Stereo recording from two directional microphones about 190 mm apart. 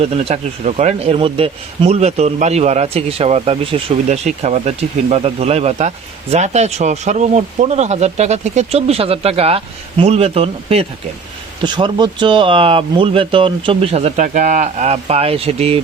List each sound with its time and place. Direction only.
0.0 s speech: 30° right (ahead or behind)